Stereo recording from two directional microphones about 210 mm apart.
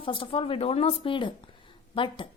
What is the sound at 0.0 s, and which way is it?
Speech, 25° left (ahead or behind).